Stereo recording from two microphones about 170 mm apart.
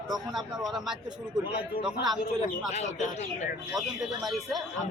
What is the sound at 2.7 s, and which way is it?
Speech, 45° left (ahead or behind).